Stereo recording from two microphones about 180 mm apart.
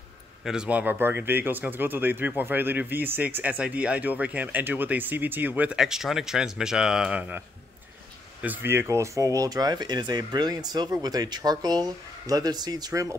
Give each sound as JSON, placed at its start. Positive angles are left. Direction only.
{"t": 0.5, "sound": "speech", "side_deg": -5}